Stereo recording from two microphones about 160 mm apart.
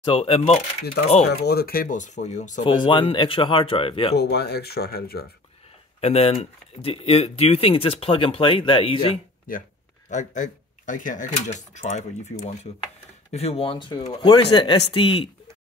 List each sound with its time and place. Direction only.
0.0 s speech: 35° left (ahead or behind)
1.4 s speech: 85° left; by 2.6 s 50° left (ahead or behind)
2.6 s speech: 30° left (ahead or behind)
4.2 s speech: 90° left
5.9 s speech: 40° left (ahead or behind)
9.5 s speech: 60° left (ahead or behind)
10.0 s speech: 50° left (ahead or behind); by 15.2 s 30° left (ahead or behind)